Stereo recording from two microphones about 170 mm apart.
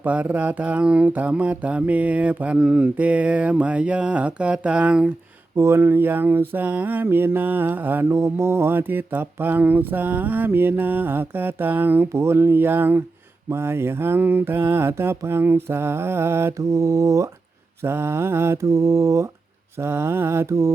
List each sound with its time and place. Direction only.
0.0 s mantra: 10° right (ahead or behind)